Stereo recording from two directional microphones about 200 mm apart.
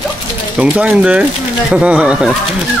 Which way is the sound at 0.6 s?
5° right (ahead or behind).